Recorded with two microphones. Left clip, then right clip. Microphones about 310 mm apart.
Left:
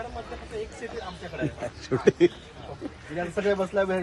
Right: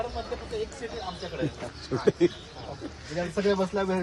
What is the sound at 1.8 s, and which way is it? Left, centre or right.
Speech, left.